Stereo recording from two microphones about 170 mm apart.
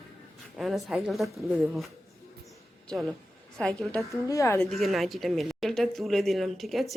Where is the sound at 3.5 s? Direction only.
5° left (ahead or behind).